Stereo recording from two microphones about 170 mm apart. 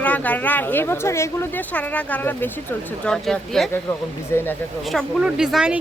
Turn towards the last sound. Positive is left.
turn(degrees=-5)  # may be behind; listen again after turning